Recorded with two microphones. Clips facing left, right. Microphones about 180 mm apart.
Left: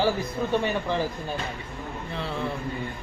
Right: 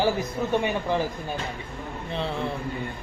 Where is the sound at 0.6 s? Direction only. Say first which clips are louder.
Right 1 dB; 15° right (ahead or behind).